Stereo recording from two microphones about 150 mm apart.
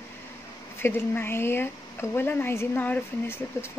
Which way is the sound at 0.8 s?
15° left (ahead or behind).